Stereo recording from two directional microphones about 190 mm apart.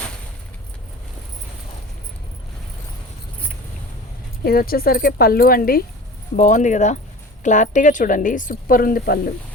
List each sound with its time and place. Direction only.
4.4 s speech: 50° left (ahead or behind)